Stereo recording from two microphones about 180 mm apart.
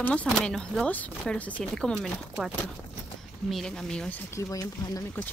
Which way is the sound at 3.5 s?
5° left (ahead or behind).